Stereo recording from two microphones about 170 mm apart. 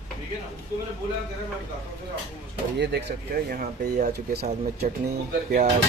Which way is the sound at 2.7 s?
70° right (ahead or behind).